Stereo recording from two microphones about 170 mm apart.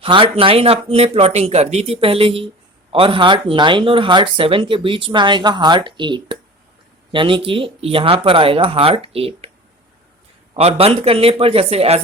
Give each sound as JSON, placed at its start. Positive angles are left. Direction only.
{"t": 0.0, "sound": "speech", "side_deg": -30}
{"t": 10.5, "sound": "speech", "side_deg": -35}